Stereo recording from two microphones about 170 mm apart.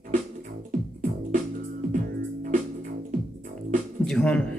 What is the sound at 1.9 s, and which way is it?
Music, 50° right (ahead or behind).